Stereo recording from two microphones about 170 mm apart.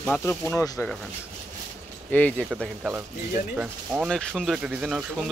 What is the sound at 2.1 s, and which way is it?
Speech, 10° left (ahead or behind).